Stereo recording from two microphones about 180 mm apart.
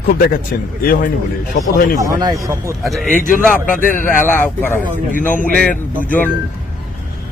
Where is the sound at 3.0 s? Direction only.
45° left (ahead or behind).